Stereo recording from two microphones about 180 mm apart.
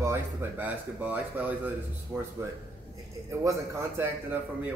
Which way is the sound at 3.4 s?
15° right (ahead or behind).